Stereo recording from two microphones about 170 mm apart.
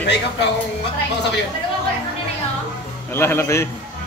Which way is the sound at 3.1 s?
15° left (ahead or behind).